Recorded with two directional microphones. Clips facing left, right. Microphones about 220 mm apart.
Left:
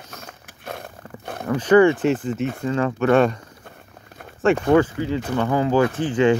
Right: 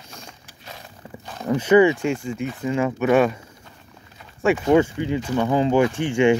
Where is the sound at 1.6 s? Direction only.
10° right (ahead or behind).